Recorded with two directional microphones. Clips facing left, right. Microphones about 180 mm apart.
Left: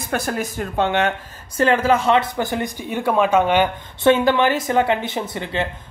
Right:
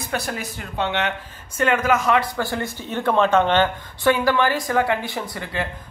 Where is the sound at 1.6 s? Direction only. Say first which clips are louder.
Left 3 dB; 30° left (ahead or behind); by 3.7 s 10° left (ahead or behind).